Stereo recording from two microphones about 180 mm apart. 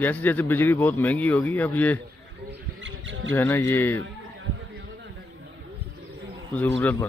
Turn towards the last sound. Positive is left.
turn(degrees=10)  # may be behind; listen again after turning